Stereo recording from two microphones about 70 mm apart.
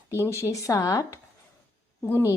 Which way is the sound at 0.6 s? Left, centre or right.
Left.